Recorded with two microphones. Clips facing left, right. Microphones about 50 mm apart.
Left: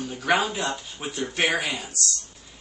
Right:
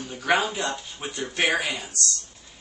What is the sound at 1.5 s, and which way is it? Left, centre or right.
Speech, right.